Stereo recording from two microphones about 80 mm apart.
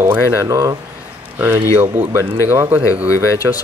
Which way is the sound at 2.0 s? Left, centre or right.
Right.